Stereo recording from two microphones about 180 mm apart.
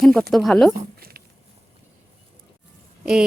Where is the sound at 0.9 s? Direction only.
55° right (ahead or behind).